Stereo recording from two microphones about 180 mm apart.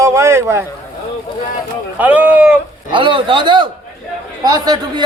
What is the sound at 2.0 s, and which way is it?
Speech, 10° right (ahead or behind).